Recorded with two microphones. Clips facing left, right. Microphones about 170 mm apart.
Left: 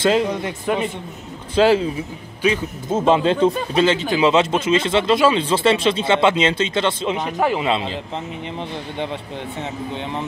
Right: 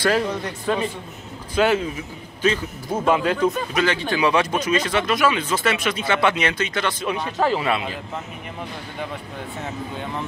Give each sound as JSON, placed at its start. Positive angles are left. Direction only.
{"t": 0.0, "sound": "speech", "side_deg": 20}
{"t": 1.5, "sound": "speech", "side_deg": 30}